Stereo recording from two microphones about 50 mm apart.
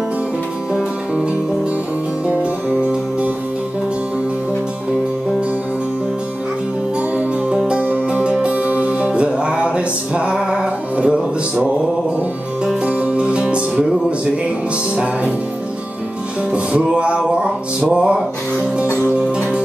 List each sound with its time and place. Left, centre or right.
7.2 s music: right
12.8 s music: right
16.5 s music: right